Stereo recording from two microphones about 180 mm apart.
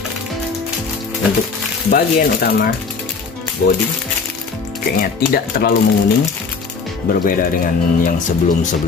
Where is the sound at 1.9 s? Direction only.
55° left (ahead or behind).